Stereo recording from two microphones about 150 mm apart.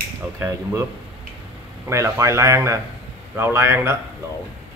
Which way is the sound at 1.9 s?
20° right (ahead or behind).